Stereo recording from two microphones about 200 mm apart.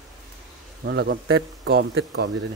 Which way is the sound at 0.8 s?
55° right (ahead or behind).